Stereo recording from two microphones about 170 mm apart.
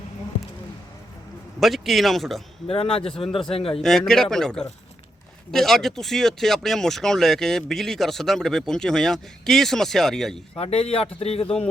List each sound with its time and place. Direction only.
1.5 s speech: centre (ahead or behind)
2.6 s a man's voice: 35° left (ahead or behind)
3.8 s speech: 5° left (ahead or behind)
10.6 s a man's voice: 35° left (ahead or behind)